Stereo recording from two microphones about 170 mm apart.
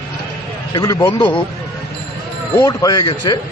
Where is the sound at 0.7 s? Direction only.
20° left (ahead or behind).